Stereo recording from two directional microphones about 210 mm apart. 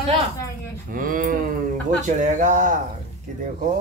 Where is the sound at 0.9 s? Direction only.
40° right (ahead or behind).